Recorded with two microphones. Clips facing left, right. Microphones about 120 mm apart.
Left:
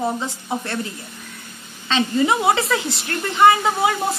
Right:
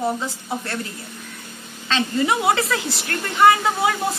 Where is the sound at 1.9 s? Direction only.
25° left (ahead or behind).